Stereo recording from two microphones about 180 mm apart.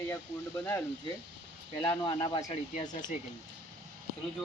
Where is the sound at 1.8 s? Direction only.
25° left (ahead or behind).